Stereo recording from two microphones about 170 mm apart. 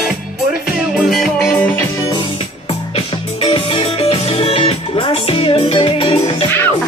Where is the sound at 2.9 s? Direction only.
35° left (ahead or behind).